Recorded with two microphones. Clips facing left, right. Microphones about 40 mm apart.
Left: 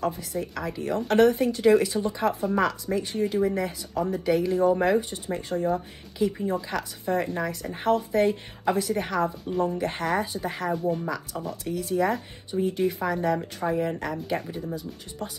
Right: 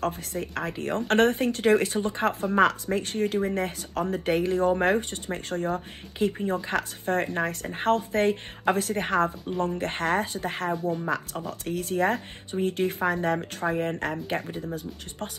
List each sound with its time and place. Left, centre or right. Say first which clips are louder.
0.0 s speech: left 1 dB; right
10.8 s speech: left 2 dB; centre
11.1 s speech: right 2 dB; right